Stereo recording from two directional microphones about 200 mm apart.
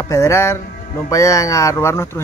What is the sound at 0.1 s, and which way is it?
Speech, 15° left (ahead or behind).